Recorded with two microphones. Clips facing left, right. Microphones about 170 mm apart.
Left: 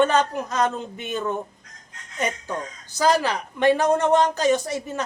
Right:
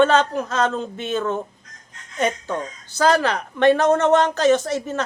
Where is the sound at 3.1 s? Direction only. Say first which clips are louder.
Right 3 dB; 60° right (ahead or behind).